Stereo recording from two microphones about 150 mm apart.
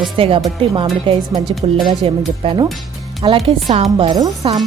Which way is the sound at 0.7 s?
30° right (ahead or behind).